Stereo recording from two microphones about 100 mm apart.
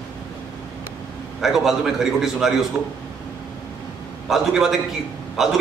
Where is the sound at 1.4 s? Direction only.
5° right (ahead or behind).